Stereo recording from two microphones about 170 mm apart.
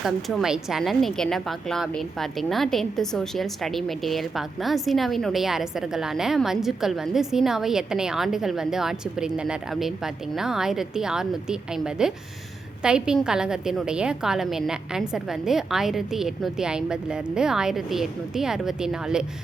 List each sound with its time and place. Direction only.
0.0 s a woman's voice: centre (ahead or behind)